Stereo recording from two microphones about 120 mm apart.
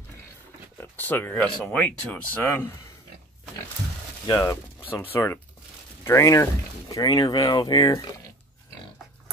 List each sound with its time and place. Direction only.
0.7 s speech: 15° left (ahead or behind)
4.3 s speech: 30° left (ahead or behind)